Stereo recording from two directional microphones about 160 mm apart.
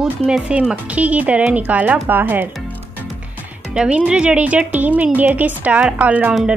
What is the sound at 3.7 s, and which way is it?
Speech, 5° right (ahead or behind).